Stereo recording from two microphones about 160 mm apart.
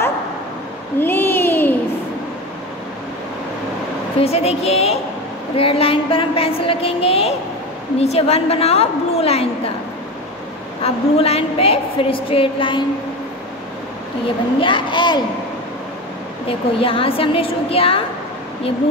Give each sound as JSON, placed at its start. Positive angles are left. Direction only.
{"t": 0.9, "sound": "a sound", "side_deg": 15}
{"t": 4.2, "sound": "a woman's voice", "side_deg": 40}
{"t": 10.8, "sound": "a woman's voice", "side_deg": 40}
{"t": 14.6, "sound": "speech", "side_deg": 30}
{"t": 16.4, "sound": "a woman's voice", "side_deg": 35}